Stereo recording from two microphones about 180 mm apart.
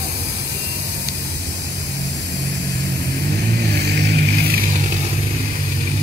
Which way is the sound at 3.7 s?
70° right (ahead or behind).